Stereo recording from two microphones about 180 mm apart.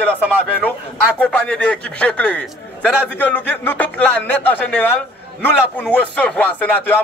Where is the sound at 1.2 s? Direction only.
5° left (ahead or behind).